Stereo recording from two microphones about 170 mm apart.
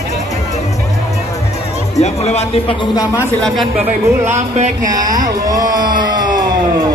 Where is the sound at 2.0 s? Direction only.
40° left (ahead or behind).